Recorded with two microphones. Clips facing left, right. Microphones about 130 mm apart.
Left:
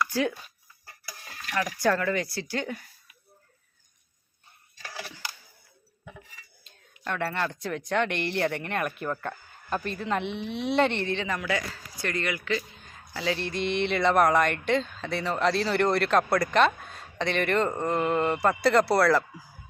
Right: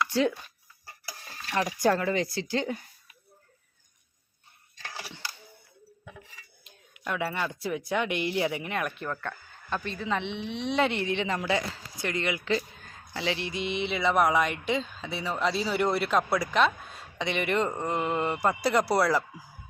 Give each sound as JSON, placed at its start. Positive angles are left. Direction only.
{"t": 1.0, "sound": "stir", "side_deg": -30}
{"t": 7.0, "sound": "speech", "side_deg": -5}
{"t": 11.3, "sound": "speech", "side_deg": -25}
{"t": 13.4, "sound": "speech", "side_deg": -10}